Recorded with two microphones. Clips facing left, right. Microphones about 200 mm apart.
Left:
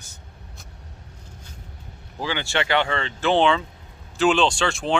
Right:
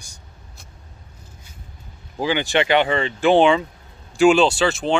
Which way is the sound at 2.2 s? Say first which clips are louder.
Right 6 dB; 15° right (ahead or behind).